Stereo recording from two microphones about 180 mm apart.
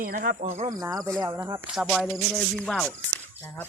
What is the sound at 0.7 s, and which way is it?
Speech, 20° right (ahead or behind).